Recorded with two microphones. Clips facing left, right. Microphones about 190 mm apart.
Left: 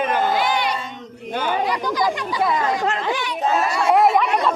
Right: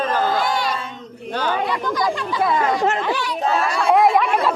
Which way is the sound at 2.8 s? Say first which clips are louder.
Right 3 dB; 25° right (ahead or behind).